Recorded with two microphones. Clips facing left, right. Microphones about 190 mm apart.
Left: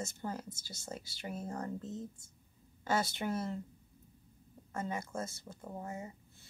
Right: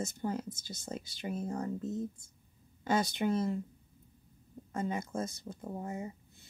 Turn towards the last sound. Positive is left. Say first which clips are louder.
# right 4 dB
turn(degrees=-20)  # may be behind; listen again after turning